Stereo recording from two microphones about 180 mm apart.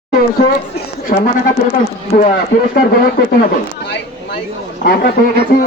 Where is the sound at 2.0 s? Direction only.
50° left (ahead or behind).